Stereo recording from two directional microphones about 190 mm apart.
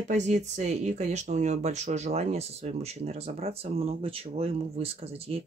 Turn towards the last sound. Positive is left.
turn(degrees=-30)  # may be behind; listen again after turning